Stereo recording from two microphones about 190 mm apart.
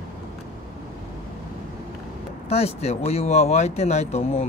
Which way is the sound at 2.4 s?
35° left (ahead or behind).